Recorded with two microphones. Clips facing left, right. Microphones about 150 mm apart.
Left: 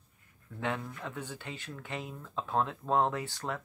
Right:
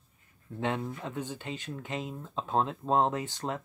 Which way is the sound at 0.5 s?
25° right (ahead or behind).